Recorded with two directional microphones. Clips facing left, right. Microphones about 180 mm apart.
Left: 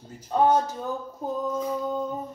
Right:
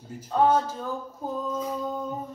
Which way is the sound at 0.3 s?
15° left (ahead or behind).